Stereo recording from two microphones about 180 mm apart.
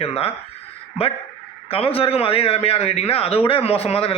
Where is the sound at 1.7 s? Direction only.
30° left (ahead or behind).